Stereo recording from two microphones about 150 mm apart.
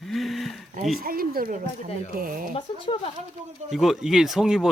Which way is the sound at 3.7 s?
Centre (ahead or behind).